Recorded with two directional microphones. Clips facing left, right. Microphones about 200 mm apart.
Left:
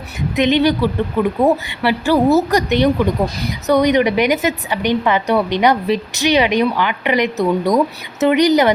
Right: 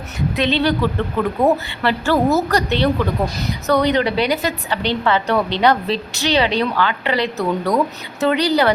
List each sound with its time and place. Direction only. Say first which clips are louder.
0.3 s a woman's voice: left 4 dB; 15° left (ahead or behind)